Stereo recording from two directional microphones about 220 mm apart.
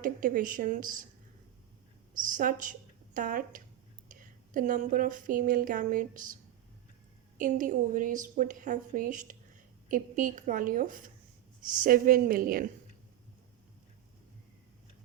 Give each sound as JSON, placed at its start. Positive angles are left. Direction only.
{"t": 0.0, "sound": "a woman's voice", "side_deg": -40}
{"t": 2.2, "sound": "a woman's voice", "side_deg": -35}
{"t": 4.1, "sound": "a sound", "side_deg": -35}
{"t": 7.3, "sound": "a woman's voice", "side_deg": -35}